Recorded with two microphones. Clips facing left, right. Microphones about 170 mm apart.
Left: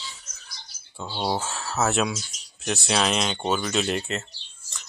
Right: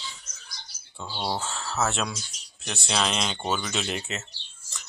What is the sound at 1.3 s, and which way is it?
Speech, 5° left (ahead or behind).